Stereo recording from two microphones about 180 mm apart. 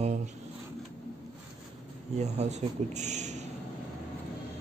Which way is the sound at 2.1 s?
40° right (ahead or behind).